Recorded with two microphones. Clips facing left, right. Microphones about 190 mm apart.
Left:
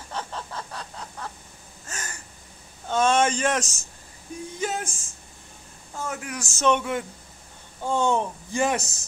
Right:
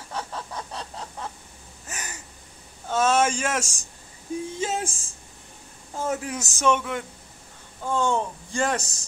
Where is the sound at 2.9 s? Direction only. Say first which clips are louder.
Even; 5° right (ahead or behind).